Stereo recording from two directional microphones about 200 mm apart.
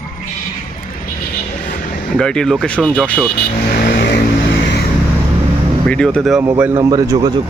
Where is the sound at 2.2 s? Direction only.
5° left (ahead or behind).